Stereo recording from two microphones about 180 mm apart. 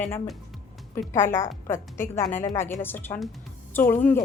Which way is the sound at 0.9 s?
15° left (ahead or behind).